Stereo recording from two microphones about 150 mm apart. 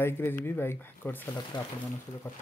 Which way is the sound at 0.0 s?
15° left (ahead or behind).